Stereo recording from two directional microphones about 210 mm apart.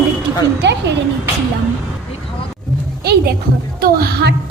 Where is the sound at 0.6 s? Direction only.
55° right (ahead or behind).